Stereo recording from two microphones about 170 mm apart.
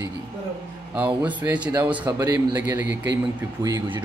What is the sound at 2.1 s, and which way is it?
Speech, 20° right (ahead or behind).